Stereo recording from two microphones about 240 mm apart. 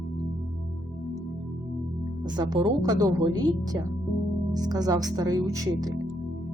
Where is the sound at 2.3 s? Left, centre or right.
Centre.